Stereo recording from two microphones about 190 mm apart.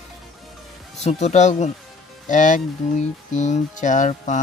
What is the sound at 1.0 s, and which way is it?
Speech, 35° left (ahead or behind).